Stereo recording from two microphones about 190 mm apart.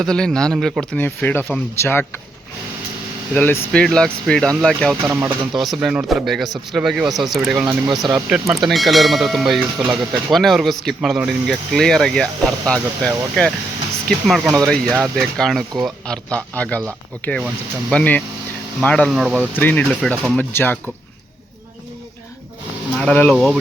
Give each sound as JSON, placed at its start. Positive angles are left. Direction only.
{"t": 0.0, "sound": "speech", "side_deg": 5}
{"t": 3.3, "sound": "speech", "side_deg": 10}
{"t": 5.0, "sound": "speech", "side_deg": -15}
{"t": 5.5, "sound": "speech", "side_deg": 0}
{"t": 19.5, "sound": "speech", "side_deg": 10}
{"t": 23.0, "sound": "speech", "side_deg": 10}